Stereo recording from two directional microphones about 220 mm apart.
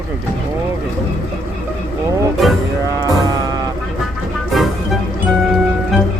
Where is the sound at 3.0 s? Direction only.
15° right (ahead or behind).